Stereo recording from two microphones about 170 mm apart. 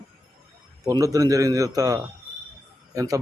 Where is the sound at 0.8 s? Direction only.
20° right (ahead or behind).